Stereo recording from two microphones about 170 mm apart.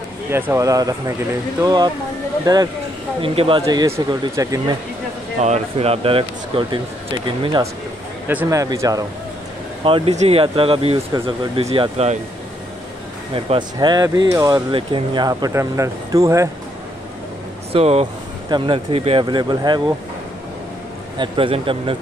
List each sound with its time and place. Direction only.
0.3 s speech: 15° right (ahead or behind); by 3.6 s 30° right (ahead or behind)
3.6 s speech: 20° right (ahead or behind)
5.4 s speech: 40° right (ahead or behind)
8.3 s speech: 15° right (ahead or behind)
9.8 s speech: 35° right (ahead or behind)
13.3 s speech: 30° right (ahead or behind)
17.7 s speech: 35° right (ahead or behind)
21.2 s speech: 30° right (ahead or behind)